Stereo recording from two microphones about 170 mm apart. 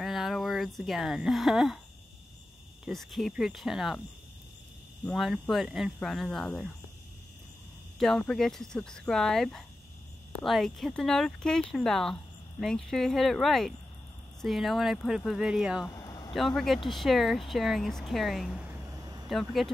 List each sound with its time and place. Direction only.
0.0 s speech: centre (ahead or behind)
2.8 s speech: centre (ahead or behind)
5.0 s speech: centre (ahead or behind)
8.0 s speech: 5° left (ahead or behind)
15.9 s vehicle: 20° left (ahead or behind)
16.3 s speech: centre (ahead or behind)
18.9 s vehicle: 20° right (ahead or behind)
19.2 s speech: centre (ahead or behind)